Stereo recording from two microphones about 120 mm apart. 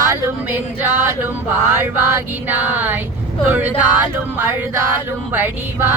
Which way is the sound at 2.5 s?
15° right (ahead or behind).